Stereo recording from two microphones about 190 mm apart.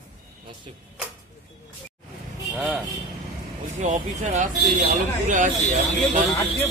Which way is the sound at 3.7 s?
40° right (ahead or behind).